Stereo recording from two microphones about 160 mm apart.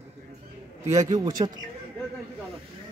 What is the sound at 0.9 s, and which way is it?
Speech, 20° right (ahead or behind).